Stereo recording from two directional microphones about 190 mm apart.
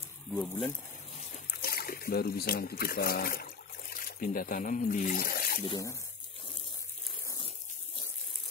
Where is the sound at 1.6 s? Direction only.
50° left (ahead or behind).